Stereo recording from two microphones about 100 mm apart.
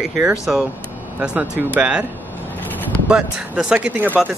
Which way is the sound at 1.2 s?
15° right (ahead or behind).